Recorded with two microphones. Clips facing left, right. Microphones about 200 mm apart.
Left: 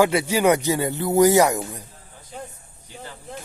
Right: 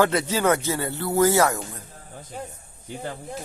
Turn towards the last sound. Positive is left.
turn(degrees=-55)  # may be behind; listen again after turning